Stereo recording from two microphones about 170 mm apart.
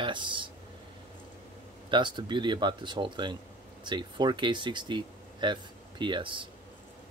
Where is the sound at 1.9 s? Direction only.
25° right (ahead or behind).